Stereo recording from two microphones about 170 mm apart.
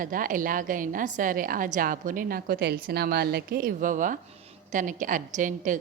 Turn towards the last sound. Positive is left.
turn(degrees=-50)  # may be behind; listen again after turning